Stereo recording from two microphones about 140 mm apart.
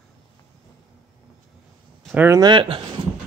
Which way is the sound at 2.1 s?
15° right (ahead or behind).